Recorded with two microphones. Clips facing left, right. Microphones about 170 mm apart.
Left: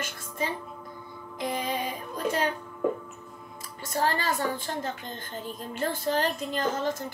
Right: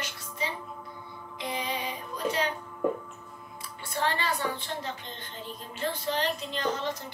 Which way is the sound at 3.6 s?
40° left (ahead or behind).